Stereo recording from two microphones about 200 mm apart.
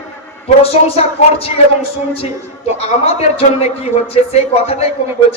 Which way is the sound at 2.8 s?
30° left (ahead or behind).